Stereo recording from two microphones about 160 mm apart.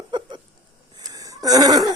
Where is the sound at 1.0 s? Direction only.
20° right (ahead or behind).